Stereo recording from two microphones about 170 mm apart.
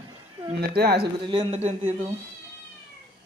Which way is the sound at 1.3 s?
35° right (ahead or behind).